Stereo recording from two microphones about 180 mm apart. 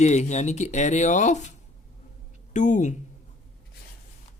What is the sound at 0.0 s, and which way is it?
Speech, 40° left (ahead or behind).